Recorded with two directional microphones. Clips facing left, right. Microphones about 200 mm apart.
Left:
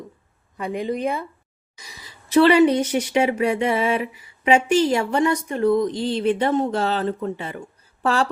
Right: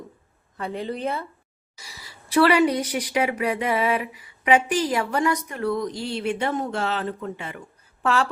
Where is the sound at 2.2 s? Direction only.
25° left (ahead or behind).